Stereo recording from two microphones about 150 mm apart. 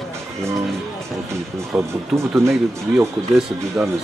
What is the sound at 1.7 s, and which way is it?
Speech, 5° right (ahead or behind).